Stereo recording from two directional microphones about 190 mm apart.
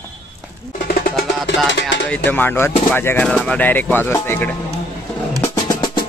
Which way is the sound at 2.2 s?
10° left (ahead or behind).